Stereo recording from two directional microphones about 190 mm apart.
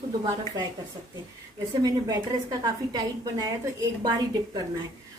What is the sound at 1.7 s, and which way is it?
A woman's voice, 20° right (ahead or behind).